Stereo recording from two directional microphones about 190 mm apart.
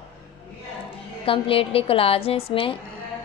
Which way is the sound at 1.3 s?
30° left (ahead or behind).